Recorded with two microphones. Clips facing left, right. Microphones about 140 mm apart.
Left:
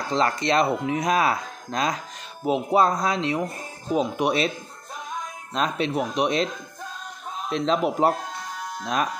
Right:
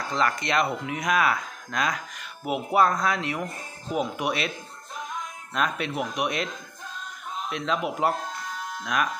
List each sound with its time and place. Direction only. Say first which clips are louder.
0.1 s speech: left 4 dB; 30° left (ahead or behind)
5.5 s speech: left 3 dB; 25° left (ahead or behind)